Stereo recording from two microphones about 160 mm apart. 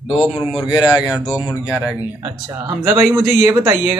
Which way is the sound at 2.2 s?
20° right (ahead or behind).